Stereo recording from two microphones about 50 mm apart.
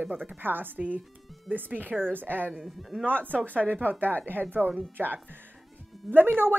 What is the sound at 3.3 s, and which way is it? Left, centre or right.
Speech, left.